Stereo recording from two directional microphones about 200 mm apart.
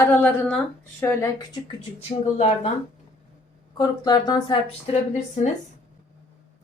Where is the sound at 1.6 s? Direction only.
30° left (ahead or behind).